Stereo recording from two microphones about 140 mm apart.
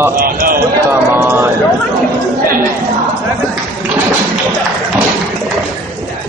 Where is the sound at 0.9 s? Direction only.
15° right (ahead or behind).